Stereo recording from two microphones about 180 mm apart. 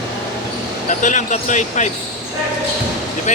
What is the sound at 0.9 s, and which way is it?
Speech, 45° left (ahead or behind).